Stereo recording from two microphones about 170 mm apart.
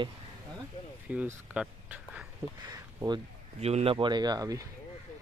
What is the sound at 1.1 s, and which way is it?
Speech, 5° right (ahead or behind).